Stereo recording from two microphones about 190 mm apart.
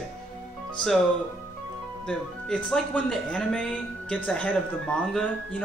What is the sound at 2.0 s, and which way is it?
Speech, 5° left (ahead or behind).